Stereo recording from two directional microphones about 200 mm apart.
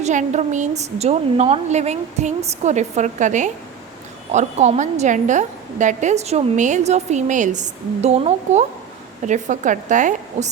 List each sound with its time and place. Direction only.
0.0 s a woman's voice: 35° right (ahead or behind)